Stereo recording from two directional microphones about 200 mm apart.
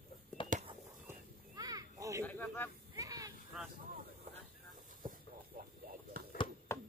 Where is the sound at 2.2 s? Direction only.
10° left (ahead or behind).